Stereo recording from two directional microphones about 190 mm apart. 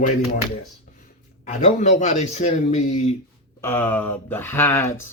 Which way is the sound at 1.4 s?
40° left (ahead or behind).